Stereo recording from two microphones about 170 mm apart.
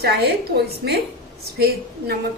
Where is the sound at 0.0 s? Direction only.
70° right (ahead or behind).